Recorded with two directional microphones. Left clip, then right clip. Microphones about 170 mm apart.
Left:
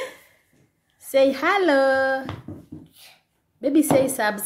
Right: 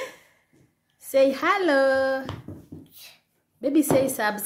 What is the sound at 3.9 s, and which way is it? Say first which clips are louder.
Speech: left 2 dB; centre (ahead or behind).